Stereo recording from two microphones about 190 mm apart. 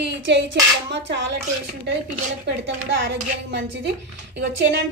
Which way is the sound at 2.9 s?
65° right (ahead or behind).